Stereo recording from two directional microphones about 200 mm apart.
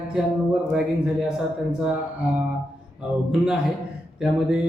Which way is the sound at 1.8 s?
5° right (ahead or behind).